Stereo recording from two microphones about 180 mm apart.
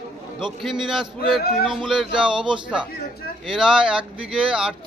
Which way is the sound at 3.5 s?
5° right (ahead or behind).